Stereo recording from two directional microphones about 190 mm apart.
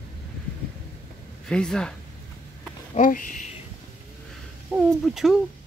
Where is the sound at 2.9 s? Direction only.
45° left (ahead or behind).